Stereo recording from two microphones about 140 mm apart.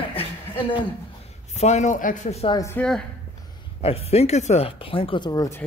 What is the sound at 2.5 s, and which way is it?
Speech, 25° left (ahead or behind).